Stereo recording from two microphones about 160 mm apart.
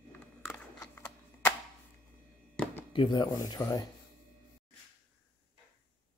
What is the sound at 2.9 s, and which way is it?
Speech, 30° left (ahead or behind).